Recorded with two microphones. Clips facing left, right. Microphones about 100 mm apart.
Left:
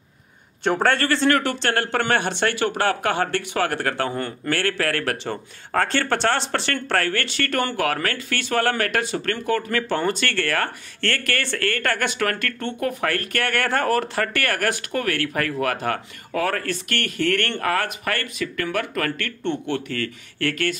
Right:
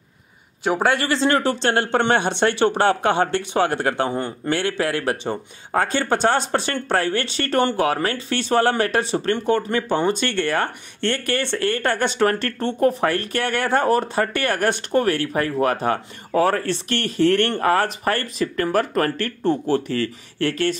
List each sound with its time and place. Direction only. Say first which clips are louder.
0.7 s speech: even; 10° right (ahead or behind); by 20.7 s 30° right (ahead or behind)